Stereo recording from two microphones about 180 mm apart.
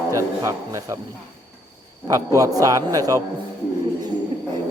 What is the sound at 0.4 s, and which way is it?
Speech, 15° right (ahead or behind).